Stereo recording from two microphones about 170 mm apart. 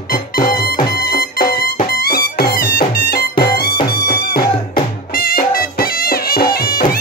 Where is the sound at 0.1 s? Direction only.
60° left (ahead or behind).